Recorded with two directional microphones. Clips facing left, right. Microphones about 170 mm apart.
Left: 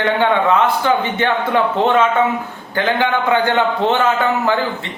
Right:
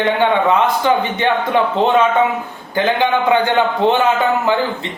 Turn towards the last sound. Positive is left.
turn(degrees=-15)  # may be behind; listen again after turning